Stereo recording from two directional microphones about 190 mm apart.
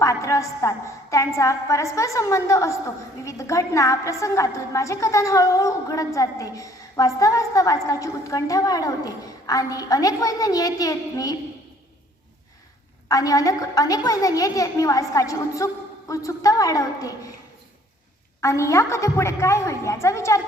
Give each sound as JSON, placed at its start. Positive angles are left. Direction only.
{"t": 0.0, "sound": "a woman's voice", "side_deg": 15}
{"t": 13.1, "sound": "a woman's voice", "side_deg": 20}
{"t": 18.3, "sound": "a woman's voice", "side_deg": 15}